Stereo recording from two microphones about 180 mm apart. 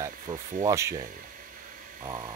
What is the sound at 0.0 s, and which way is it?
Speech, 20° right (ahead or behind).